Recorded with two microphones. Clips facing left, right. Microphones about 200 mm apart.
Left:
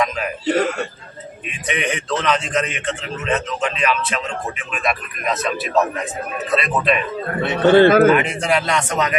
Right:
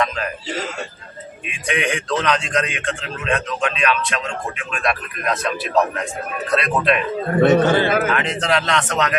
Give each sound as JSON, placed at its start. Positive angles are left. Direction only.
{"t": 0.4, "sound": "a man's voice", "side_deg": 60}
{"t": 1.6, "sound": "a man's voice", "side_deg": 0}
{"t": 7.4, "sound": "a man's voice", "side_deg": -45}
{"t": 8.1, "sound": "speech", "side_deg": 10}